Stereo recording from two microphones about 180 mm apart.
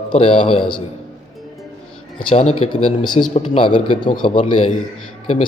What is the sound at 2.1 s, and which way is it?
Speech, 35° left (ahead or behind).